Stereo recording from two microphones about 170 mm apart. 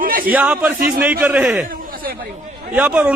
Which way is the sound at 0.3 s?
10° right (ahead or behind).